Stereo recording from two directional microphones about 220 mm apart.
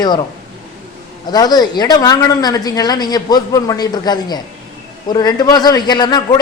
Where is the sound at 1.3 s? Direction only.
20° left (ahead or behind).